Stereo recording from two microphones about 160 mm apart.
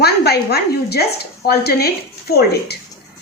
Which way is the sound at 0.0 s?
85° left.